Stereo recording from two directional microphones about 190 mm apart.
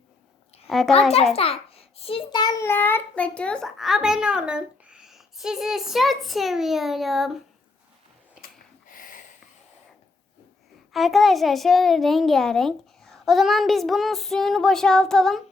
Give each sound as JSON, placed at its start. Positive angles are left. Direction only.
{"t": 0.7, "sound": "a child's voice", "side_deg": 0}
{"t": 1.4, "sound": "a child's voice", "side_deg": 30}
{"t": 8.9, "sound": "a sound", "side_deg": 45}
{"t": 10.9, "sound": "a child's voice", "side_deg": 0}